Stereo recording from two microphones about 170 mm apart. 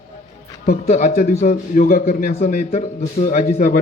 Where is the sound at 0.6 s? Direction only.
45° left (ahead or behind).